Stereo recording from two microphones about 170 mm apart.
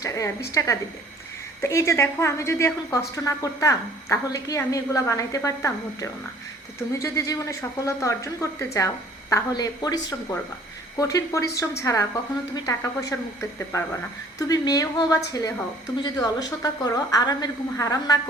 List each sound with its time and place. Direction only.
0.0 s a woman's voice: 20° left (ahead or behind)